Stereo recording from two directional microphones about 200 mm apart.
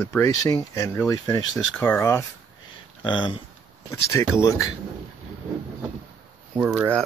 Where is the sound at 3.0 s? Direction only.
25° left (ahead or behind).